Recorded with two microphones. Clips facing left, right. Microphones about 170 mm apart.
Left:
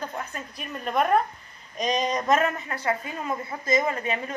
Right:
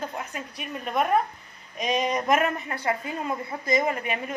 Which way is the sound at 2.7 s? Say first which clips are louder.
Even; 25° right (ahead or behind).